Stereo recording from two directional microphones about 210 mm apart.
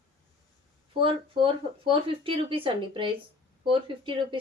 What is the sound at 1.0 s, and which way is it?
A woman's voice, 25° right (ahead or behind).